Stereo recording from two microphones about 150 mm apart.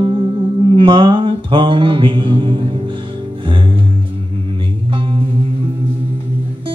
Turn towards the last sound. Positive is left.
turn(degrees=-35)  # may be behind; listen again after turning